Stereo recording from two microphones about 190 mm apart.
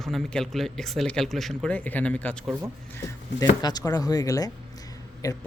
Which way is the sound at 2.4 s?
10° right (ahead or behind).